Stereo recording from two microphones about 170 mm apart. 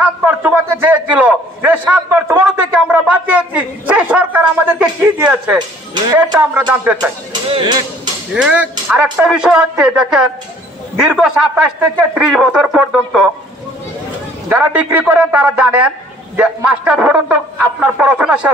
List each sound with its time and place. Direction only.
0.2 s a sound: 10° right (ahead or behind)
6.7 s a man's voice: 10° right (ahead or behind)
7.0 s speech: 30° right (ahead or behind)
8.3 s a man's voice: 5° right (ahead or behind)
14.5 s a man's voice: 10° right (ahead or behind)